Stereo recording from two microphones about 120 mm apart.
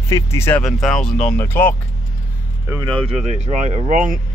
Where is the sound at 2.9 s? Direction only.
50° right (ahead or behind); by 3.8 s 75° right (ahead or behind).